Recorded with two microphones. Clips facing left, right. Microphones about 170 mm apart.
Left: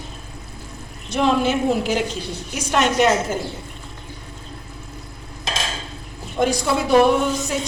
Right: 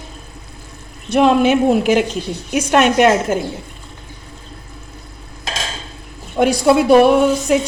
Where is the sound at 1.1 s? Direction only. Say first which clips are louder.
Right 6 dB; 65° right (ahead or behind).